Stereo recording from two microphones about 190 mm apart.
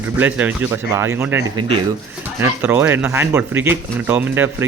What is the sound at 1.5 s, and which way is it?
Speech, 30° right (ahead or behind).